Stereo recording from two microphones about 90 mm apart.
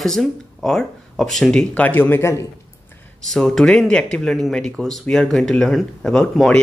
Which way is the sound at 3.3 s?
5° left (ahead or behind).